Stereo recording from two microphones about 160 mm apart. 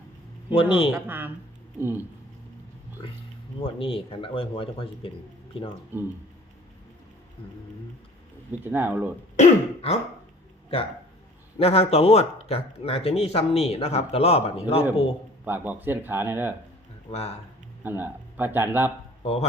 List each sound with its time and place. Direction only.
0.5 s speech: 35° left (ahead or behind)
0.9 s speech: 15° right (ahead or behind)
3.0 s a sound: 35° left (ahead or behind)
3.6 s speech: 35° left (ahead or behind)
5.9 s speech: 15° right (ahead or behind)
8.6 s speech: 10° right (ahead or behind)
9.3 s throat clearing: 40° left (ahead or behind)
11.5 s speech: 40° left (ahead or behind)
15.4 s speech: 10° right (ahead or behind)
17.1 s speech: 40° left (ahead or behind)
17.8 s speech: 10° right (ahead or behind)
19.2 s speech: 40° left (ahead or behind)